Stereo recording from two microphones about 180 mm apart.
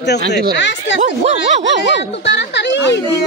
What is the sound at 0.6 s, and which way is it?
Speech, 90° left.